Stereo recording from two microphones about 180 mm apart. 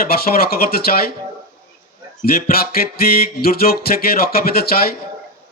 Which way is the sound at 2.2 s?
55° left (ahead or behind).